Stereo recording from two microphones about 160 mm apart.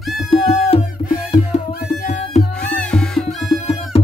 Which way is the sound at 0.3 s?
40° left (ahead or behind).